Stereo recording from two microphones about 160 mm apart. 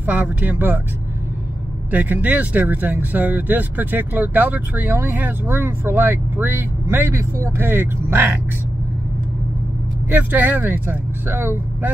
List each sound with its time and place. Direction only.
0.0 s speech: 10° right (ahead or behind)
1.9 s speech: 10° right (ahead or behind)
10.0 s speech: 10° right (ahead or behind)